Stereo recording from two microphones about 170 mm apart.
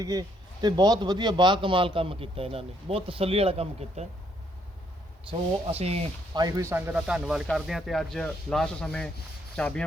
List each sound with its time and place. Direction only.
0.0 s a man's voice: 20° right (ahead or behind); by 4.0 s 35° right (ahead or behind)
5.3 s a man's voice: 35° right (ahead or behind)
6.3 s speech: 20° right (ahead or behind); by 9.8 s 5° left (ahead or behind)